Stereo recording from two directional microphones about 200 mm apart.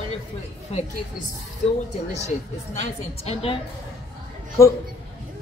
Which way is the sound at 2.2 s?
35° left (ahead or behind).